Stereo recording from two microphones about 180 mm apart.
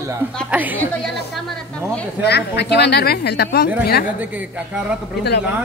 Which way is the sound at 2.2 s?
70° left (ahead or behind).